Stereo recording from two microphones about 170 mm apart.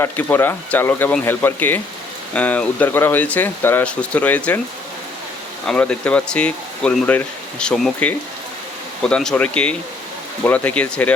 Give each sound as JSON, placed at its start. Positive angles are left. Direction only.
{"t": 0.0, "sound": "speech", "side_deg": 15}
{"t": 5.6, "sound": "speech", "side_deg": 5}